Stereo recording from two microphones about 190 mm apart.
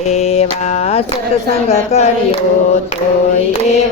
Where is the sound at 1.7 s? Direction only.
35° left (ahead or behind).